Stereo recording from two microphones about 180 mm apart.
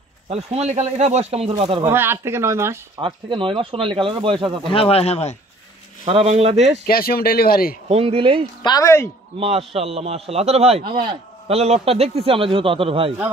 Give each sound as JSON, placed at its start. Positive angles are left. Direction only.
{"t": 0.3, "sound": "a man's voice", "side_deg": -35}
{"t": 1.9, "sound": "speech", "side_deg": -15}
{"t": 3.0, "sound": "speech", "side_deg": -25}
{"t": 4.6, "sound": "speech", "side_deg": 30}
{"t": 6.0, "sound": "a man's voice", "side_deg": -35}
{"t": 6.9, "sound": "speech", "side_deg": 55}
{"t": 7.9, "sound": "a man's voice", "side_deg": -30}
{"t": 8.6, "sound": "a woman's voice", "side_deg": 20}
{"t": 9.4, "sound": "a man's voice", "side_deg": -35}